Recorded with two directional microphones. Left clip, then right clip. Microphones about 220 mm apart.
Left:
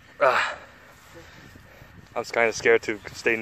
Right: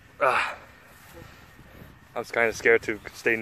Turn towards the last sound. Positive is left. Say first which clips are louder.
# left 1 dB
turn(degrees=0)  # may be behind; listen again after turning